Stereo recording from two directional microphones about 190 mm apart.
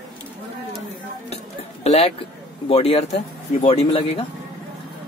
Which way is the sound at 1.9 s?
30° left (ahead or behind).